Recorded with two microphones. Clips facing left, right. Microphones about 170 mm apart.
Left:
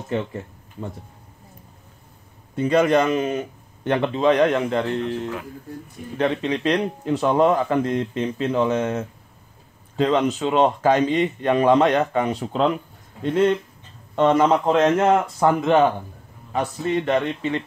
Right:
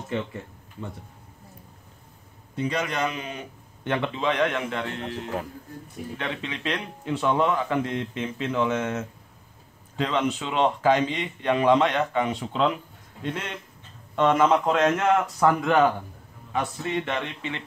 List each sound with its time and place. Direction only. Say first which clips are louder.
0.1 s speech: left 5 dB; 35° left (ahead or behind)
2.5 s speech: left 10 dB; 50° left (ahead or behind)
6.1 s speech: left 11 dB; 40° left (ahead or behind)
14.1 s speech: left 3 dB; 35° left (ahead or behind)
16.5 s speech: left 5 dB; 40° left (ahead or behind)